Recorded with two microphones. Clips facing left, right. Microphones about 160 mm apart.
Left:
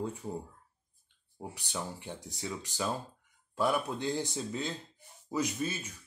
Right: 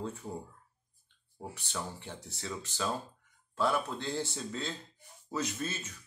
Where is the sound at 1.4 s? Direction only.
15° left (ahead or behind).